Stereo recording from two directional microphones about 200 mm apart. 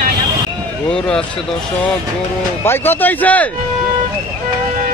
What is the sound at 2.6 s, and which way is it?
Speech, 10° left (ahead or behind).